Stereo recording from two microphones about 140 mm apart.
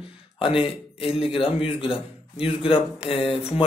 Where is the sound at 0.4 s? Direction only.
40° left (ahead or behind).